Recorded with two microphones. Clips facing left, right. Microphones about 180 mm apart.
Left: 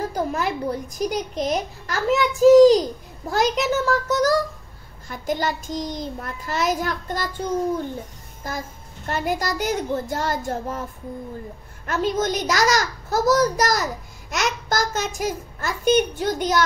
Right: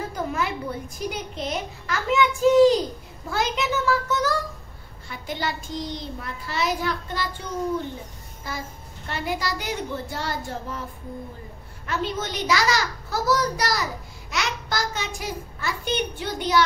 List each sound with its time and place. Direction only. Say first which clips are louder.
0.1 s a sound: left 3 dB; 40° left (ahead or behind)
0.9 s a child's voice: left 6 dB; 40° left (ahead or behind)
8.5 s a child's voice: left 3 dB; 45° left (ahead or behind)
11.8 s a child's voice: left 6 dB; 45° left (ahead or behind)